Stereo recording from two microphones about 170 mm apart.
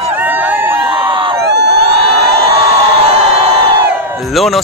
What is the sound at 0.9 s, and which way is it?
Crowd, 25° right (ahead or behind).